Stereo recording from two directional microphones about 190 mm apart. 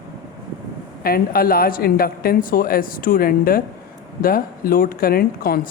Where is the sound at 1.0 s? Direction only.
50° left (ahead or behind).